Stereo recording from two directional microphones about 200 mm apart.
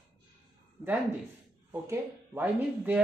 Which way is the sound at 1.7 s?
10° right (ahead or behind).